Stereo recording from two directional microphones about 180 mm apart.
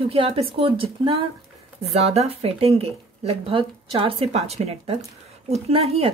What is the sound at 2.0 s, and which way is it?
Speech, 35° right (ahead or behind).